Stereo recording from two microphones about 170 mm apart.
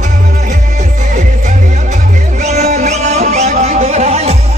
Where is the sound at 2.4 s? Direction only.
45° right (ahead or behind).